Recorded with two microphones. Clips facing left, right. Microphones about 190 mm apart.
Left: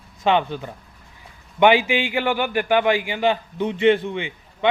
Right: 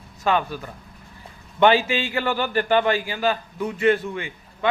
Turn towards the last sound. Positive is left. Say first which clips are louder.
# left 3 dB
turn(degrees=20)  # may be behind; listen again after turning